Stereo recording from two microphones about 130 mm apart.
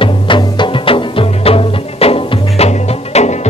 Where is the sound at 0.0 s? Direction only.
40° left (ahead or behind).